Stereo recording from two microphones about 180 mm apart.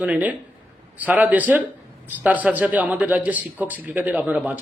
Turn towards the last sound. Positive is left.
turn(degrees=-10)  # may be behind; listen again after turning